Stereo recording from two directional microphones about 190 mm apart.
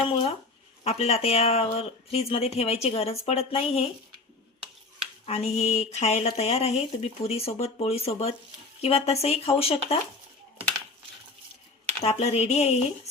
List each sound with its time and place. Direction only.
0.0 s speech: 30° left (ahead or behind)
5.2 s speech: 30° left (ahead or behind)
12.0 s speech: 35° left (ahead or behind)